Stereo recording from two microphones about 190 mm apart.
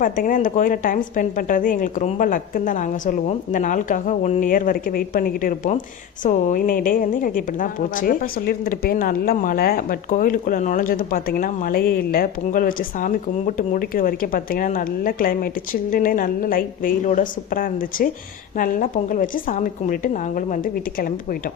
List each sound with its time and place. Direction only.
0.0 s a woman's voice: 45° left (ahead or behind)